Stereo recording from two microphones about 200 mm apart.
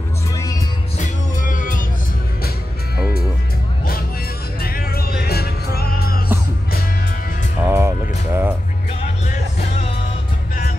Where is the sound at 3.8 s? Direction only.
50° left (ahead or behind).